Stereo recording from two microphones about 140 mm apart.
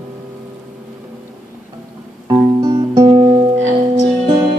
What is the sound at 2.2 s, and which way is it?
Music, 25° right (ahead or behind).